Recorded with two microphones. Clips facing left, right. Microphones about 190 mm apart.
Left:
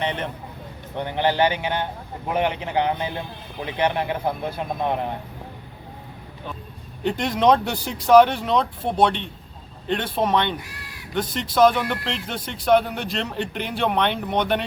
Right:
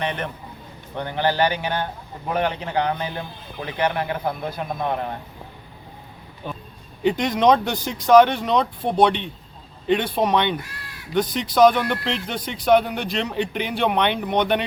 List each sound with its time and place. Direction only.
0.0 s a man's voice: 20° left (ahead or behind)
7.0 s speech: centre (ahead or behind)